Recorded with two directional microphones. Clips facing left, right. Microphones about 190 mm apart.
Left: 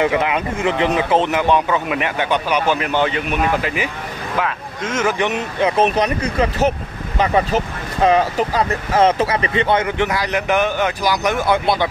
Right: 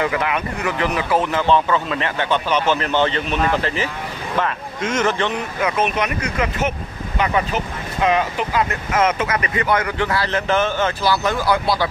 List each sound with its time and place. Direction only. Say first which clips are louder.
0.0 s speech: left 3 dB; 20° left (ahead or behind); by 5.1 s 5° left (ahead or behind)
5.2 s speech: left 3 dB; 25° left (ahead or behind)